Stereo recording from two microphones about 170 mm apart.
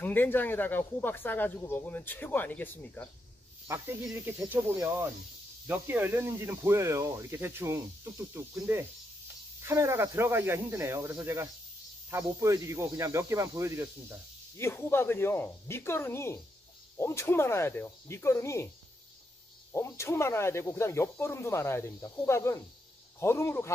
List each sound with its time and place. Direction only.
0.0 s speech: 10° left (ahead or behind)
4.1 s speech: 15° right (ahead or behind)
14.6 s speech: 15° left (ahead or behind)
19.7 s speech: 15° left (ahead or behind)